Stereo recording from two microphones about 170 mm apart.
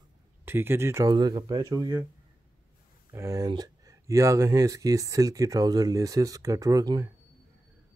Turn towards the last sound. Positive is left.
turn(degrees=-20)  # may be behind; listen again after turning